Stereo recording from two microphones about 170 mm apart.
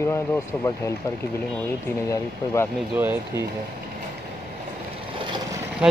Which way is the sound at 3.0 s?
10° right (ahead or behind).